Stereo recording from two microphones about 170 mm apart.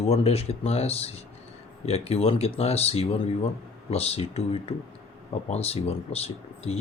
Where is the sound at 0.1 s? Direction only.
35° left (ahead or behind).